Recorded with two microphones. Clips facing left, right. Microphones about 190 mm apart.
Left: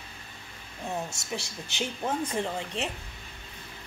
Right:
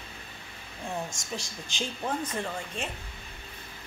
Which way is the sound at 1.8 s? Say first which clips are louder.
Left 2 dB; 10° left (ahead or behind).